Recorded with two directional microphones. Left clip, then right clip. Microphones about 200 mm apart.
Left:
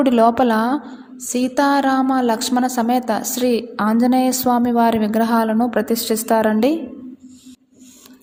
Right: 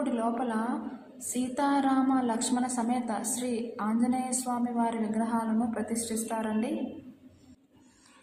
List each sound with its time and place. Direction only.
0.0 s a woman's voice: 45° left (ahead or behind)